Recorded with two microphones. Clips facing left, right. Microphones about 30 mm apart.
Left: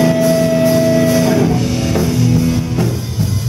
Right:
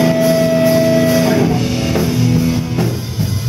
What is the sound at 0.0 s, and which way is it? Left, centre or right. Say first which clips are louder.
Music: even; centre.